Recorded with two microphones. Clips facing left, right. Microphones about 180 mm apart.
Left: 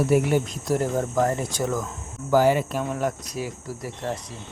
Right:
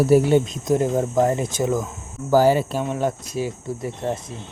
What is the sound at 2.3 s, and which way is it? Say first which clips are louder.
Speech: right 3 dB; 35° right (ahead or behind).